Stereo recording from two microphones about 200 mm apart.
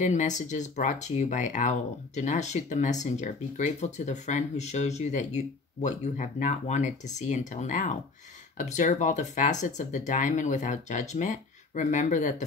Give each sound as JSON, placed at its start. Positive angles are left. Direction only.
{"t": 0.0, "sound": "speech", "side_deg": 35}